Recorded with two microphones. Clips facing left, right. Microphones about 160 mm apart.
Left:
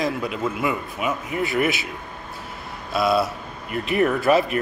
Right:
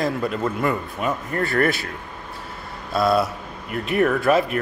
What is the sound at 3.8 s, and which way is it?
Speech, centre (ahead or behind).